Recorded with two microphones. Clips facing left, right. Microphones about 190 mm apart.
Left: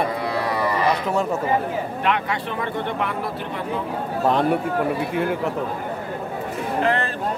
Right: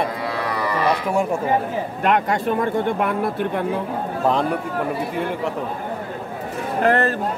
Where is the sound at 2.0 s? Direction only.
45° right (ahead or behind).